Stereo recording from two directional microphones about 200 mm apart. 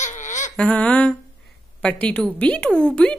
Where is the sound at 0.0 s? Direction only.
35° left (ahead or behind).